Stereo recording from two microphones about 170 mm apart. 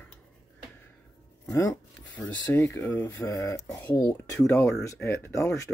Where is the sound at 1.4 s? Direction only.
20° left (ahead or behind).